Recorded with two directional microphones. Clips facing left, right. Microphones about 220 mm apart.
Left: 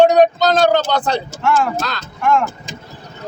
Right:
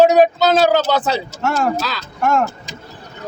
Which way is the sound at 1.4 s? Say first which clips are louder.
Left 1 dB; 40° right (ahead or behind).